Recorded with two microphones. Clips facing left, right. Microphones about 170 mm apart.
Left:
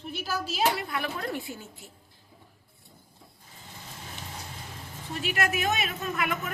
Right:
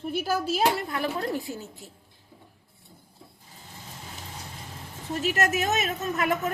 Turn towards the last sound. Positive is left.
turn(degrees=-40)  # may be behind; listen again after turning